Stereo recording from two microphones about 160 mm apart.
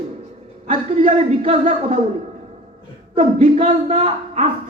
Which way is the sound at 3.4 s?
50° right (ahead or behind).